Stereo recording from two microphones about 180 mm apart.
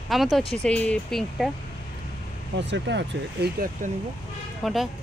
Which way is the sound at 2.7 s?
75° right (ahead or behind).